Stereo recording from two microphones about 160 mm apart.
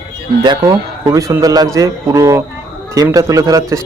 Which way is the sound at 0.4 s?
30° right (ahead or behind).